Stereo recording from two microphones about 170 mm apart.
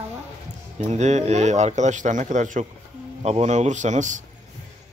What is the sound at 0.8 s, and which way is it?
A man's voice, 40° right (ahead or behind).